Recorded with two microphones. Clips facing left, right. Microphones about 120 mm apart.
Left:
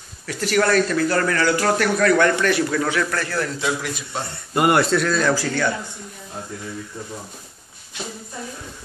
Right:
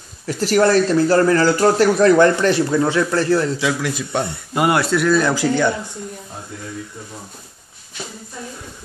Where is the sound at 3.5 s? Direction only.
90° right.